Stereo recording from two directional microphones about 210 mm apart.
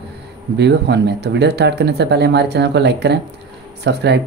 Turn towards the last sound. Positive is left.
turn(degrees=-55)  # may be behind; listen again after turning